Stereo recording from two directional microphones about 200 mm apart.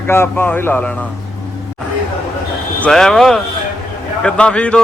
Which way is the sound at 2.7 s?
5° left (ahead or behind).